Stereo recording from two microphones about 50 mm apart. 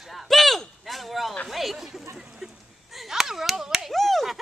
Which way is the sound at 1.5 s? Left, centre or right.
Centre.